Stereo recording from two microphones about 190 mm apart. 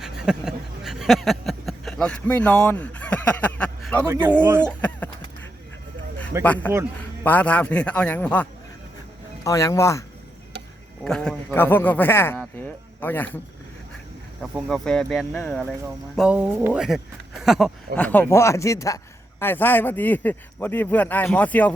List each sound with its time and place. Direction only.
0.0 s a sound: 5° right (ahead or behind)
4.0 s speech: 15° right (ahead or behind)
4.6 s a sound: 5° left (ahead or behind)
6.4 s speech: 10° left (ahead or behind)
11.0 s speech: 5° left (ahead or behind)
14.4 s speech: centre (ahead or behind)
16.1 s speech: 5° right (ahead or behind)